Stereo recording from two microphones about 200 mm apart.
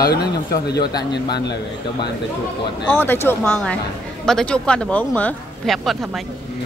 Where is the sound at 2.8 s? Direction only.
10° left (ahead or behind).